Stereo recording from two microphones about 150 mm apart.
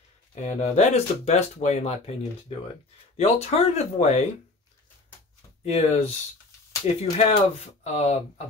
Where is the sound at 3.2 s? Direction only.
45° left (ahead or behind).